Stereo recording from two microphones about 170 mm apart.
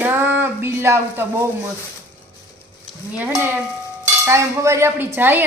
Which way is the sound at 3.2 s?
10° right (ahead or behind).